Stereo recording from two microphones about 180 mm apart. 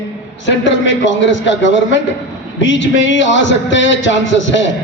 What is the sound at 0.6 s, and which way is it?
A man's voice, 90° left.